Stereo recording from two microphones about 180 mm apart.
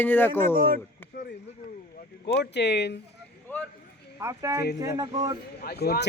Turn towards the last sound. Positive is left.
turn(degrees=60)  # may be behind; listen again after turning